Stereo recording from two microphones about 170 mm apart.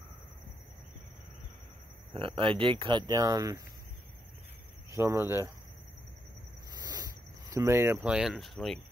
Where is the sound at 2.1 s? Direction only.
30° right (ahead or behind).